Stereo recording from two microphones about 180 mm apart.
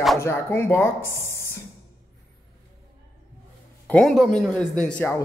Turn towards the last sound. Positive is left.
turn(degrees=10)  # may be behind; listen again after turning